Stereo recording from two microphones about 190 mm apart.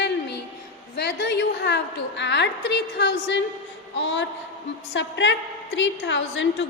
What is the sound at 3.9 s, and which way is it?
A woman's voice, 75° left (ahead or behind).